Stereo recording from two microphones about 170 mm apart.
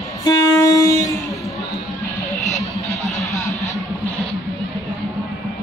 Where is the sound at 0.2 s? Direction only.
20° left (ahead or behind).